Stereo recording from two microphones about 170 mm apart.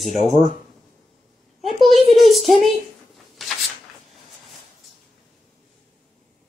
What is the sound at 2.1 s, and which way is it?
Speech, centre (ahead or behind).